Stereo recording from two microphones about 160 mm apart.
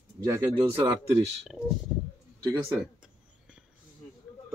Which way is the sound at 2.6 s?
5° right (ahead or behind).